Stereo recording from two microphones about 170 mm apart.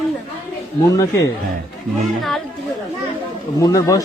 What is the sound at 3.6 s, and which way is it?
Speech, 20° left (ahead or behind).